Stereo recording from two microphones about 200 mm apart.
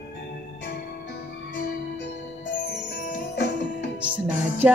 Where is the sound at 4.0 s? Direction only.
10° right (ahead or behind).